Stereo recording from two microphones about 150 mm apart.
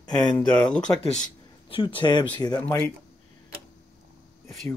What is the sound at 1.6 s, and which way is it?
Speech, 35° left (ahead or behind).